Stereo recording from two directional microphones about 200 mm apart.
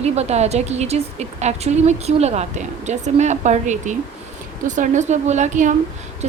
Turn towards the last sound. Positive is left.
turn(degrees=-40)  # may be behind; listen again after turning